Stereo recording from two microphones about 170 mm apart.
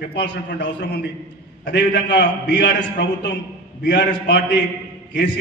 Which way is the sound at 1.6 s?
75° left (ahead or behind).